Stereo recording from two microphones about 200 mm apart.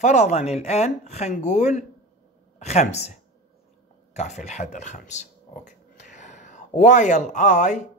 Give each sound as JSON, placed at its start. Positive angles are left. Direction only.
{"t": 0.0, "sound": "speech", "side_deg": 35}